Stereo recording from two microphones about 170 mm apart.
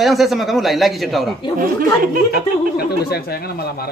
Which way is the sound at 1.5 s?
55° right (ahead or behind).